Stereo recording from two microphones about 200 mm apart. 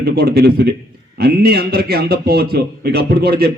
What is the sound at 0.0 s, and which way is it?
A man's voice, 55° right (ahead or behind).